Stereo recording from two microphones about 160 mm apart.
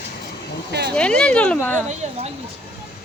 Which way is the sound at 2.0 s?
45° right (ahead or behind).